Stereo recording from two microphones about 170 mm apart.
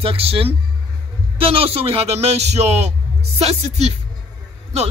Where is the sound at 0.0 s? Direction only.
35° right (ahead or behind).